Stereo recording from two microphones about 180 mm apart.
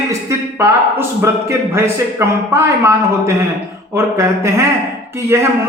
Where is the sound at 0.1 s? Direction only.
15° right (ahead or behind).